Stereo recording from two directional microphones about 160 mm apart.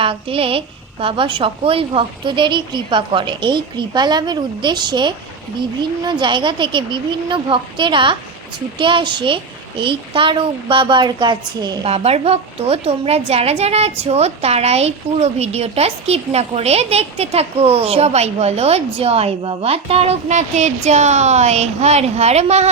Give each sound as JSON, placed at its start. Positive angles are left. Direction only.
{"t": 0.0, "sound": "a woman's voice", "side_deg": -35}
{"t": 11.9, "sound": "a woman's voice", "side_deg": -40}